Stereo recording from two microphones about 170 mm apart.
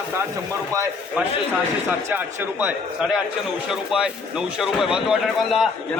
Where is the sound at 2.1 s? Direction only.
10° right (ahead or behind).